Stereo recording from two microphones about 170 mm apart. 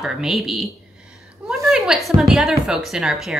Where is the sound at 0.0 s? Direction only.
Centre (ahead or behind).